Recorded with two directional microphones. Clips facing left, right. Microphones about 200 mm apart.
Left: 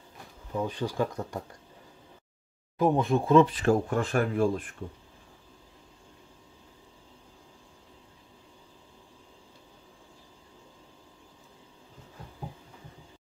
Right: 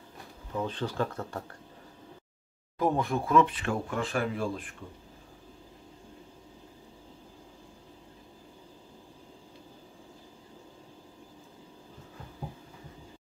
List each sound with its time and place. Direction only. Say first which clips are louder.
0.6 s speech: left 2 dB; 10° left (ahead or behind)
2.8 s speech: left 4 dB; 20° left (ahead or behind); by 4.6 s 45° left (ahead or behind)